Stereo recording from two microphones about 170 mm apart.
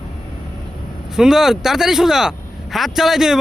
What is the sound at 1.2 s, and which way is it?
Speech, 5° right (ahead or behind).